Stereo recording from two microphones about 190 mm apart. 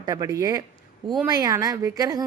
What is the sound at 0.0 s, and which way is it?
A woman's voice, 20° right (ahead or behind).